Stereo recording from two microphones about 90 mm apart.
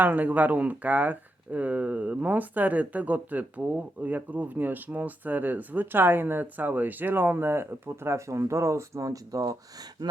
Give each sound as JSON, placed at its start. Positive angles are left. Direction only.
{"t": 0.0, "sound": "speech", "side_deg": -20}